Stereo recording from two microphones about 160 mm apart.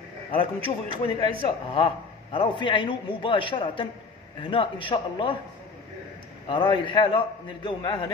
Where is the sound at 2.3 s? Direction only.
30° left (ahead or behind).